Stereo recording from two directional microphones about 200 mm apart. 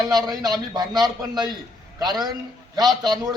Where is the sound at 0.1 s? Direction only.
20° right (ahead or behind).